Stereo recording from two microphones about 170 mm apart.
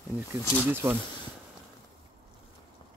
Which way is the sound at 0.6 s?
10° right (ahead or behind).